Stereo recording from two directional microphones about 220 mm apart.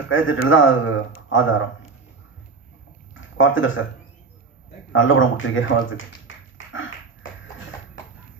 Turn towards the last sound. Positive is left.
turn(degrees=60)  # may be behind; listen again after turning